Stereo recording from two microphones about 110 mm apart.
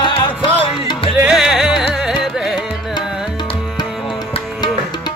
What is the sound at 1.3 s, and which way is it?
Music, 5° right (ahead or behind).